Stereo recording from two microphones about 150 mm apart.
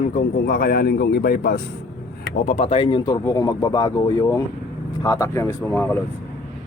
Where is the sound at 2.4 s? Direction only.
45° left (ahead or behind); by 6.0 s 15° left (ahead or behind).